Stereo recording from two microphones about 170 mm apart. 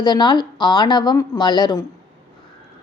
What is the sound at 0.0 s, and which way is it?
A woman's voice, 25° left (ahead or behind).